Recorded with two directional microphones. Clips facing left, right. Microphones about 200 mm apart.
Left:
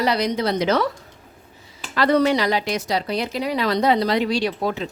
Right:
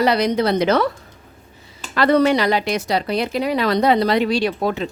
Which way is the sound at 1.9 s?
60° right (ahead or behind).